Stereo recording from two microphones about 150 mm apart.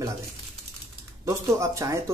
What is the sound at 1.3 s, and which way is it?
Speech, 20° right (ahead or behind).